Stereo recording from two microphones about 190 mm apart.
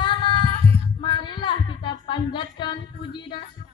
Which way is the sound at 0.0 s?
25° left (ahead or behind).